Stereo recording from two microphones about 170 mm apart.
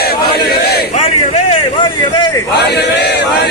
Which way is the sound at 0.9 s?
35° left (ahead or behind).